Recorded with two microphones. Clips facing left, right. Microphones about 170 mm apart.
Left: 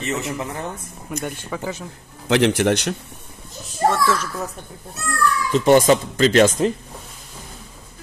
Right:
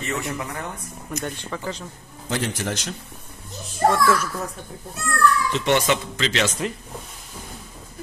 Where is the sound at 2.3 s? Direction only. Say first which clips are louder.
Left 10 dB; 75° left (ahead or behind).